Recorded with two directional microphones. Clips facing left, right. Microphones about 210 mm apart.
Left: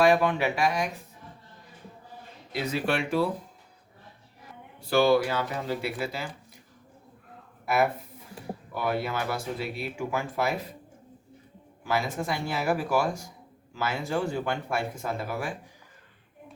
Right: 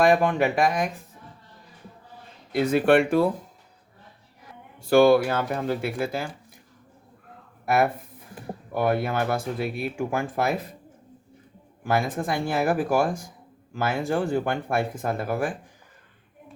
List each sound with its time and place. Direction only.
0.0 s speech: 50° right (ahead or behind)
2.5 s speech: 50° right (ahead or behind)
4.9 s speech: 50° right (ahead or behind)
7.6 s speech: 50° right (ahead or behind)
11.8 s speech: 50° right (ahead or behind)